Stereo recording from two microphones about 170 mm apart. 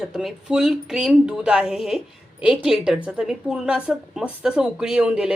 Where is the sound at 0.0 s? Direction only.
Centre (ahead or behind).